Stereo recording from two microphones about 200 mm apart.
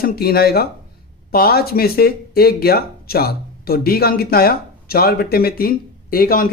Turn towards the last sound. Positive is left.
turn(degrees=45)  # may be behind; listen again after turning